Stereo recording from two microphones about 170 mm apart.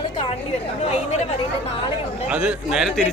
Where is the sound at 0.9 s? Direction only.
40° left (ahead or behind).